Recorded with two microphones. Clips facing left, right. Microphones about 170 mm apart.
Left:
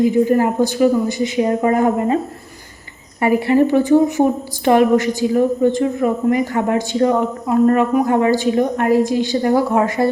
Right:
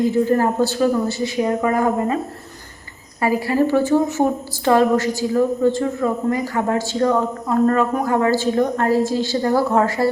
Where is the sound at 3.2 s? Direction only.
20° left (ahead or behind).